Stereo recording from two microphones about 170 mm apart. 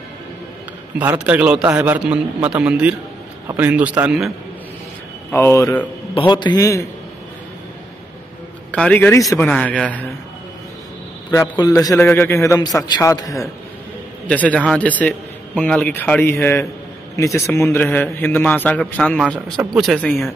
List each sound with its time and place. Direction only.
0.9 s a man's voice: 10° right (ahead or behind)
5.3 s a man's voice: 15° left (ahead or behind)
6.1 s a man's voice: 25° left (ahead or behind)
8.7 s a man's voice: 5° left (ahead or behind)
11.2 s a man's voice: 20° left (ahead or behind)
14.2 s a man's voice: 10° left (ahead or behind)